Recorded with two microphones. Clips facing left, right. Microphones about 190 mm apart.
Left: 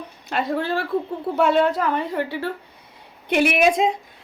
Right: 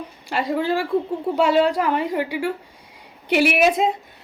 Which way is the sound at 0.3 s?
10° right (ahead or behind).